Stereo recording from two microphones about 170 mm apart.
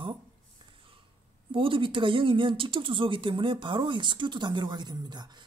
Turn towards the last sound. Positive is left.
turn(degrees=-25)  # may be behind; listen again after turning